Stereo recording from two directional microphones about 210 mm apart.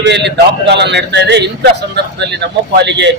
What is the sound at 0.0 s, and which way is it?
A man's voice, 55° right (ahead or behind).